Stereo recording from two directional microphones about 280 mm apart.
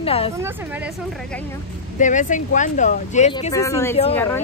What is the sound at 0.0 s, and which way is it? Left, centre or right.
Speech, centre.